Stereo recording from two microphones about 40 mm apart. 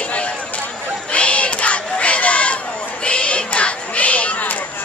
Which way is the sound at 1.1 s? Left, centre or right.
Left.